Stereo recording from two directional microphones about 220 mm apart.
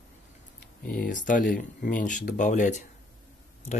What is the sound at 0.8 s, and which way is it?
Speech, 40° left (ahead or behind).